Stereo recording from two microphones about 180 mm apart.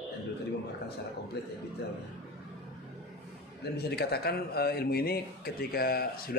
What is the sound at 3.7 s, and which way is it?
Speech, 60° left (ahead or behind).